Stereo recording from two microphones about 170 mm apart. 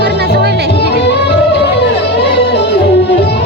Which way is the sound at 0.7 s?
75° left (ahead or behind).